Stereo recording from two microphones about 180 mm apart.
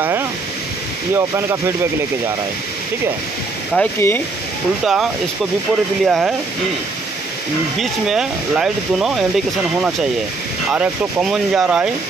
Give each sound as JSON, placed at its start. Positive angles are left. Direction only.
{"t": 1.1, "sound": "speech", "side_deg": -15}
{"t": 3.7, "sound": "speech", "side_deg": 10}
{"t": 4.8, "sound": "speech", "side_deg": 0}
{"t": 7.8, "sound": "speech", "side_deg": -5}
{"t": 10.7, "sound": "speech", "side_deg": -5}